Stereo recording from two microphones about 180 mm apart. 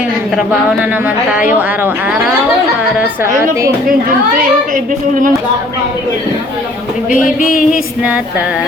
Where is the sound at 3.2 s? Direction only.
15° right (ahead or behind).